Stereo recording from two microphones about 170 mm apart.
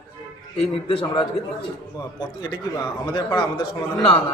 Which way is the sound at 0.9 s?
30° left (ahead or behind).